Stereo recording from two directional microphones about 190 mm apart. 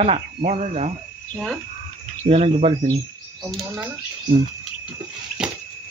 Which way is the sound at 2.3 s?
35° right (ahead or behind).